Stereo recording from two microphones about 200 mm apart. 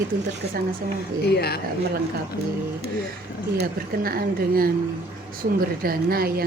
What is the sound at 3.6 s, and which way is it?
Speech, 50° right (ahead or behind).